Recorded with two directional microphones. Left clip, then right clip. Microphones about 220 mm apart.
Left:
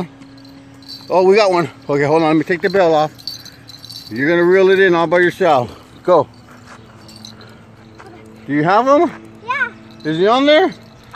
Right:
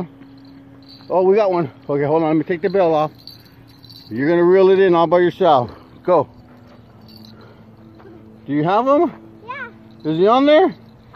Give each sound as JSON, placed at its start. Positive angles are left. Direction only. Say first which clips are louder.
{"t": 1.0, "sound": "a man's voice", "louder": "left 3 dB", "side_deg": -5}
{"t": 5.7, "sound": "a sound", "louder": "left 3 dB", "side_deg": -5}
{"t": 8.5, "sound": "speech", "louder": "left 3 dB", "side_deg": -5}
{"t": 9.1, "sound": "children playing", "louder": "left 10 dB", "side_deg": 10}
{"t": 10.0, "sound": "speech", "louder": "left 1 dB", "side_deg": -25}